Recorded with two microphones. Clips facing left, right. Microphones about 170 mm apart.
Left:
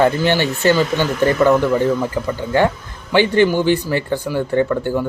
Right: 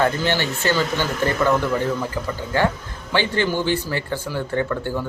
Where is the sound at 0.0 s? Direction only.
15° left (ahead or behind).